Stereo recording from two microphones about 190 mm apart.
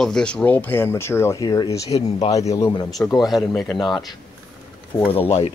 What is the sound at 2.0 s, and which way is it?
Speech, 35° left (ahead or behind).